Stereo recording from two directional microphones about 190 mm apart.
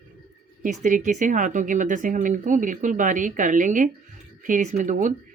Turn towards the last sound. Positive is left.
turn(degrees=-40)  # may be behind; listen again after turning